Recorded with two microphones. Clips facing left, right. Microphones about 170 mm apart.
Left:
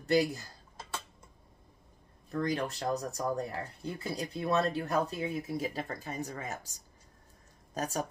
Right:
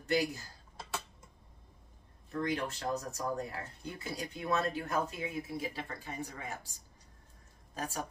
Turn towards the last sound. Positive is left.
turn(degrees=40)  # may be behind; listen again after turning